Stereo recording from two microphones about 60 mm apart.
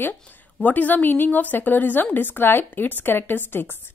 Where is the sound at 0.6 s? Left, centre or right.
Left.